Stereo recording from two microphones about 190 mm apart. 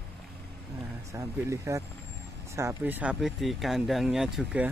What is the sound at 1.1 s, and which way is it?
Speech, 15° right (ahead or behind).